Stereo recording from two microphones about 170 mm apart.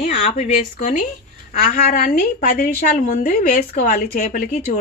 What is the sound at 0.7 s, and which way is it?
A woman's voice, 50° left (ahead or behind).